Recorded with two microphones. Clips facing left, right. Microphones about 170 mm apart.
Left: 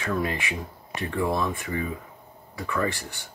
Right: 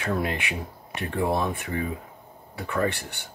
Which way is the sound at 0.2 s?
60° right (ahead or behind).